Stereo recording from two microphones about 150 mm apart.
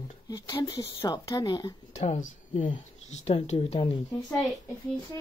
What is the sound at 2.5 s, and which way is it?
Speech, 35° left (ahead or behind).